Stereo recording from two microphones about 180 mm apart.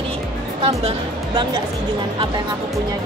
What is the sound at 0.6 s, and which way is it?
Speech, 35° right (ahead or behind).